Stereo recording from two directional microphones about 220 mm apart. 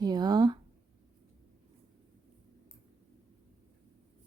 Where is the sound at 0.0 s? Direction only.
20° right (ahead or behind).